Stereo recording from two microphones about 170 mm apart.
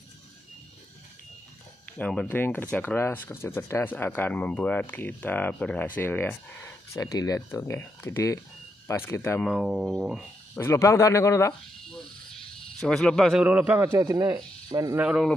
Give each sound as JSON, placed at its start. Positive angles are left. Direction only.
{"t": 2.0, "sound": "speech", "side_deg": 5}
{"t": 9.4, "sound": "speech", "side_deg": -5}
{"t": 10.5, "sound": "speech", "side_deg": 15}
{"t": 12.8, "sound": "speech", "side_deg": 5}
{"t": 15.0, "sound": "speech", "side_deg": -5}